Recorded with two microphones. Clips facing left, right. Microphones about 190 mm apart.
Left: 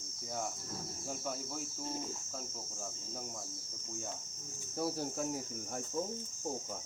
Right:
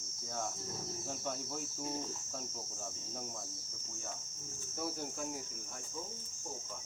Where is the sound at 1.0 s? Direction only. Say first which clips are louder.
Left 2 dB; 5° left (ahead or behind).